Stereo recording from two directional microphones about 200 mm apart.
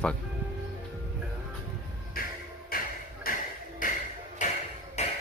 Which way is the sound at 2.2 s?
50° left (ahead or behind).